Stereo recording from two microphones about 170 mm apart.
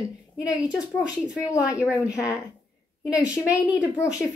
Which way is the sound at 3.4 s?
5° right (ahead or behind).